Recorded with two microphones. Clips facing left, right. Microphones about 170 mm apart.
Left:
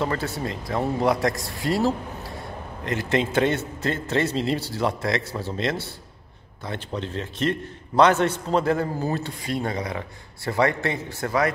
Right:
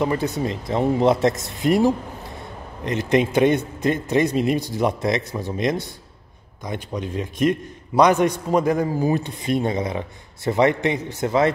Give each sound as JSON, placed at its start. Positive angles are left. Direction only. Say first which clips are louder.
{"t": 0.0, "sound": "a man's voice", "louder": "right 4 dB", "side_deg": -15}